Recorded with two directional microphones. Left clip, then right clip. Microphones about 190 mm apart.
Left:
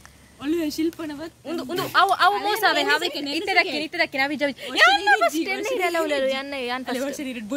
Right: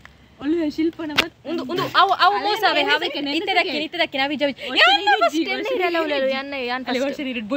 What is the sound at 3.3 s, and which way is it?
Speech, centre (ahead or behind).